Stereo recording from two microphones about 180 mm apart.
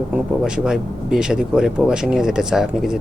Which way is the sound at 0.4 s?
5° right (ahead or behind).